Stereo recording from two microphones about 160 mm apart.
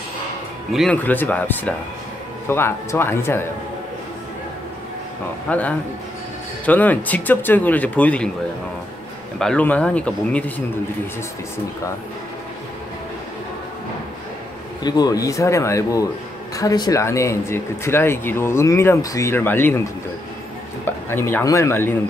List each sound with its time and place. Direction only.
0.7 s speech: 10° left (ahead or behind)
5.5 s speech: 10° left (ahead or behind)
9.4 s speech: 5° left (ahead or behind)
14.8 s speech: 25° left (ahead or behind)